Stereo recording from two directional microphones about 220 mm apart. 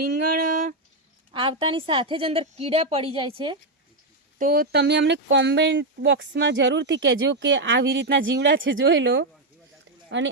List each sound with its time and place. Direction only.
0.0 s a sound: 45° right (ahead or behind)
1.3 s a woman's voice: 25° right (ahead or behind)
4.4 s speech: 40° right (ahead or behind)